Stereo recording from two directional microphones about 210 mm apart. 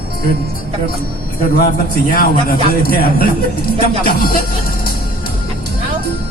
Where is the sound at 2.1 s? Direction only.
45° left (ahead or behind).